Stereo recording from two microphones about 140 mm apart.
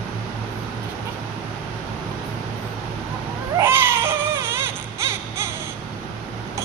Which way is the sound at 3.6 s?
15° right (ahead or behind).